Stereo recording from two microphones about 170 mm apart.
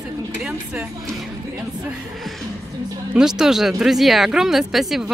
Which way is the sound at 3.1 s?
5° right (ahead or behind).